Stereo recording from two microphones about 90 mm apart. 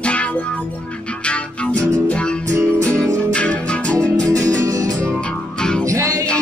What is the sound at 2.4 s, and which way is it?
Music, 35° right (ahead or behind).